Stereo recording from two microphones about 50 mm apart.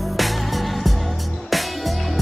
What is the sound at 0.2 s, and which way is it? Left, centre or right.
Music, centre.